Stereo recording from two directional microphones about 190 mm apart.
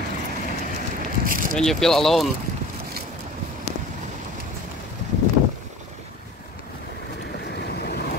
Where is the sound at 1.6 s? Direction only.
Centre (ahead or behind).